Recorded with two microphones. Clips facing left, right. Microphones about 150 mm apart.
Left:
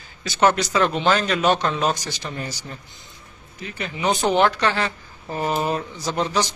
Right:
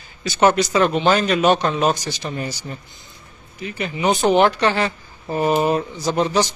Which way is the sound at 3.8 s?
10° right (ahead or behind).